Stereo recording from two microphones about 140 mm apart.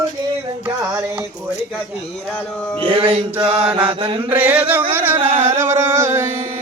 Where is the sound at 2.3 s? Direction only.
10° left (ahead or behind).